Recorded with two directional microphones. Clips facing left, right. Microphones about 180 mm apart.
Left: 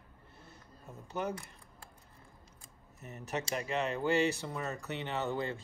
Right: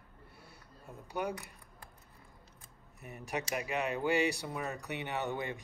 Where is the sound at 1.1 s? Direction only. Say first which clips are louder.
Even; 10° right (ahead or behind).